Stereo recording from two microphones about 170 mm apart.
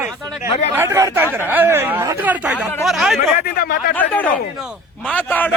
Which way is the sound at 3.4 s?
60° left (ahead or behind).